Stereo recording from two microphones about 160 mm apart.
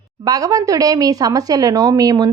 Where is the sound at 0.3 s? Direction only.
20° right (ahead or behind).